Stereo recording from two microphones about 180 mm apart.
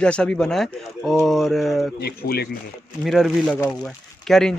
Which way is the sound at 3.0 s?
Centre (ahead or behind).